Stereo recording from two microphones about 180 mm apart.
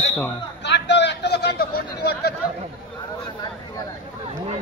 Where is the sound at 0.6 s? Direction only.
75° left (ahead or behind).